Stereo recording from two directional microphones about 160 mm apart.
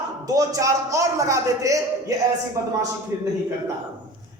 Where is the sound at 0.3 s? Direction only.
20° right (ahead or behind).